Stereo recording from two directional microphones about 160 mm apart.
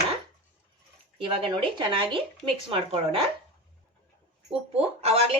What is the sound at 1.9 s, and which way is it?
Speech, 30° right (ahead or behind).